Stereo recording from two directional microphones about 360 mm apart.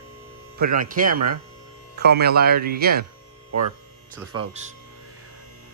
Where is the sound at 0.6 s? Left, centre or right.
Right.